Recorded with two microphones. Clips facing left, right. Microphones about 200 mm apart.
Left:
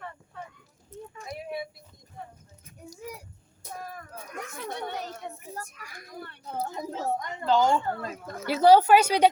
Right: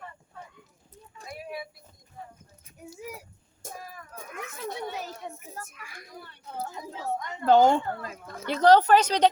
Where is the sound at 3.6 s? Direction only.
45° right (ahead or behind).